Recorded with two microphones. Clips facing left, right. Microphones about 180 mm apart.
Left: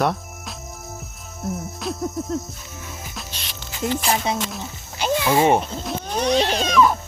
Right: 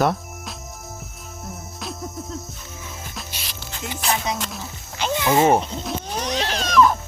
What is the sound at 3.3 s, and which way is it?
Music, 5° right (ahead or behind).